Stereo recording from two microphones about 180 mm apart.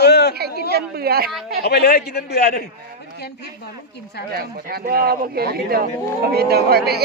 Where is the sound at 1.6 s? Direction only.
60° left (ahead or behind).